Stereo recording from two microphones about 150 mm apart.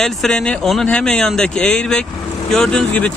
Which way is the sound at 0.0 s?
5° left (ahead or behind).